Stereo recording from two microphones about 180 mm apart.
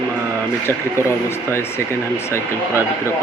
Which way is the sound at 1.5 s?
15° left (ahead or behind).